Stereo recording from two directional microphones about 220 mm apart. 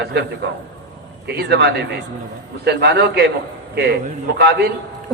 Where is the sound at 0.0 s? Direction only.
50° right (ahead or behind).